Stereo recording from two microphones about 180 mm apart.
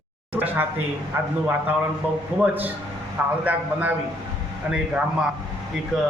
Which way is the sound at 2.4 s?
10° right (ahead or behind).